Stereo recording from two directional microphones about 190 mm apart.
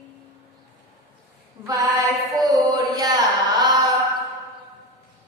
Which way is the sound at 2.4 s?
20° right (ahead or behind).